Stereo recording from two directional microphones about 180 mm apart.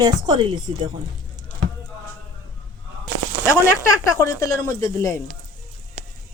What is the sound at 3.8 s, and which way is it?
Speech, 15° left (ahead or behind).